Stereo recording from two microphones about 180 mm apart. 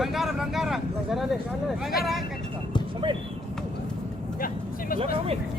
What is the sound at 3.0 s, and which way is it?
Speech, 25° right (ahead or behind).